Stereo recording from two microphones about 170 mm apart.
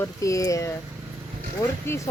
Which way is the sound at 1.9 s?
15° left (ahead or behind).